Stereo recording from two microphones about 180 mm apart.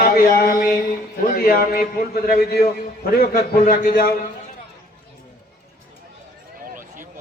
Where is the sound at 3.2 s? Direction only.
55° left (ahead or behind).